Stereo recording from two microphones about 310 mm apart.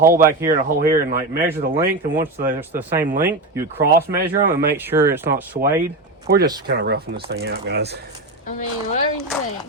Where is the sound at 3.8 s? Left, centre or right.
Right.